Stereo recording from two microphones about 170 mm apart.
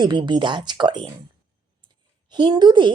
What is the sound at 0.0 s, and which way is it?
Speech, 25° right (ahead or behind).